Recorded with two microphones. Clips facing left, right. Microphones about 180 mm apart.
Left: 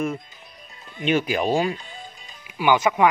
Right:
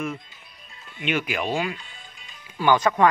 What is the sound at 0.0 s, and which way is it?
Music, 40° left (ahead or behind).